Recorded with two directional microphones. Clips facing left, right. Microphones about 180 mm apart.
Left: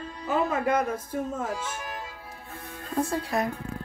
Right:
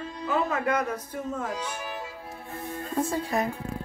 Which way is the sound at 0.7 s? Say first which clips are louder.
Left 2 dB; 10° left (ahead or behind).